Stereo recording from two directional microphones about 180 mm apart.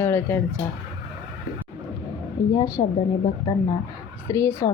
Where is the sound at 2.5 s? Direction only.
20° left (ahead or behind).